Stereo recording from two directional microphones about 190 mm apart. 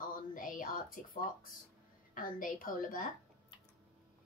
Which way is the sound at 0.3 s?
45° left (ahead or behind).